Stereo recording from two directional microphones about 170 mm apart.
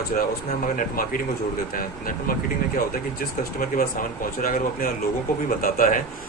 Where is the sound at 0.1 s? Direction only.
50° left (ahead or behind).